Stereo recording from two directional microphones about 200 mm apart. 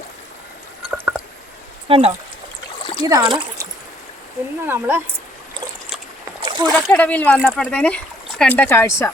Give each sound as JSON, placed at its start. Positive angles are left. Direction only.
{"t": 0.9, "sound": "squish", "side_deg": -5}
{"t": 1.9, "sound": "speech", "side_deg": -30}
{"t": 2.8, "sound": "a sound", "side_deg": 25}
{"t": 3.2, "sound": "speech", "side_deg": -20}
{"t": 4.6, "sound": "speech", "side_deg": -10}
{"t": 6.4, "sound": "splash", "side_deg": -20}
{"t": 6.7, "sound": "speech", "side_deg": 5}